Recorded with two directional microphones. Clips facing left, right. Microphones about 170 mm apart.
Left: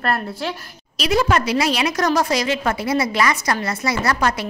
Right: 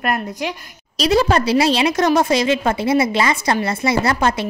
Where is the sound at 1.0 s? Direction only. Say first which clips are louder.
Right 3 dB; 30° right (ahead or behind).